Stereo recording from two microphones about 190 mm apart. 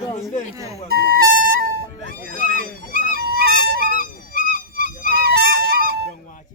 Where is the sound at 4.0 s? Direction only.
45° left (ahead or behind).